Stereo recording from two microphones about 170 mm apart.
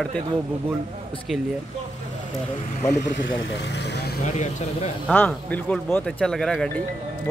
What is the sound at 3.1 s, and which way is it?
Speech, 90° left.